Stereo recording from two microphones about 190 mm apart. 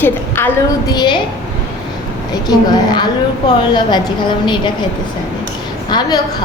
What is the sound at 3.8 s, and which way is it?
Speech, 25° left (ahead or behind).